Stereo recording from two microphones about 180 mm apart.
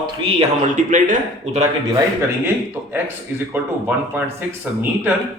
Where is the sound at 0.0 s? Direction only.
30° right (ahead or behind).